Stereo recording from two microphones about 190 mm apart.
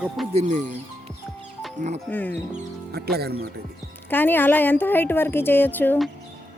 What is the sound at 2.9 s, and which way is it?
Speech, 55° right (ahead or behind).